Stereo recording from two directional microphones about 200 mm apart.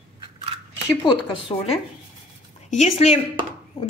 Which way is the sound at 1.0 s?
20° left (ahead or behind).